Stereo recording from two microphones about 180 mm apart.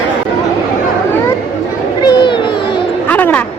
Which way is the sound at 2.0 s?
25° left (ahead or behind).